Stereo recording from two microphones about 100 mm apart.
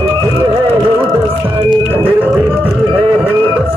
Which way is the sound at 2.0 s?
15° right (ahead or behind).